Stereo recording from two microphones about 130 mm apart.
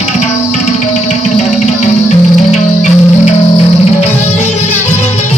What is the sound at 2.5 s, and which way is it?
Music, 60° left (ahead or behind).